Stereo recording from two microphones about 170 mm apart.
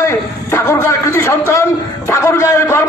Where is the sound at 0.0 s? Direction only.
15° left (ahead or behind).